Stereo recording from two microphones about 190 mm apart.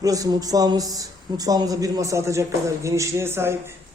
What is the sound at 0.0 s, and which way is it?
A man's voice, 20° right (ahead or behind).